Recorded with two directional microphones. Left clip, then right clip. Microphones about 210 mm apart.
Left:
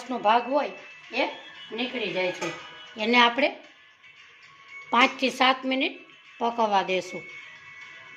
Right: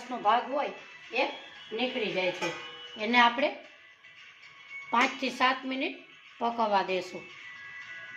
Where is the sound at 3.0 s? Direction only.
40° left (ahead or behind).